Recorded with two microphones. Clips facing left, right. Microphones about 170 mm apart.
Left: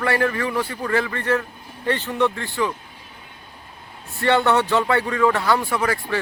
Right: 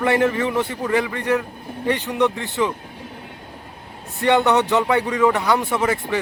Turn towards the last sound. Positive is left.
turn(degrees=-20)  # may be behind; listen again after turning